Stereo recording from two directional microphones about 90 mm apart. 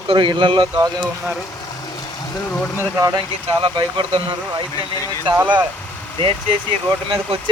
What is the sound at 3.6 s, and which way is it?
Speech, 70° right (ahead or behind).